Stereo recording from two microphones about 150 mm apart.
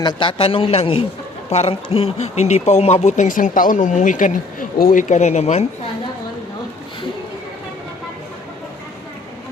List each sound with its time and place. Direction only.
0.0 s a man's voice: 30° left (ahead or behind); by 5.6 s 50° left (ahead or behind)